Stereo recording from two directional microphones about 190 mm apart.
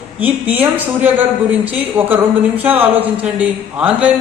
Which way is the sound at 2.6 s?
10° right (ahead or behind).